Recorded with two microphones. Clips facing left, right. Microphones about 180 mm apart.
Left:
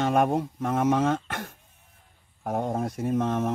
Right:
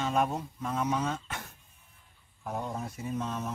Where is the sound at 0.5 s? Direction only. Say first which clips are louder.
Left 6 dB; 55° left (ahead or behind).